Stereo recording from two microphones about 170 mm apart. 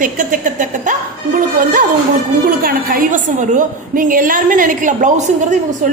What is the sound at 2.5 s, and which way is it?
A woman's voice, 60° right (ahead or behind).